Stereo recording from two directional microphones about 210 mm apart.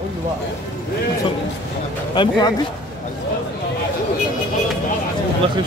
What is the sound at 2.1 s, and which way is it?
Speech, 25° left (ahead or behind).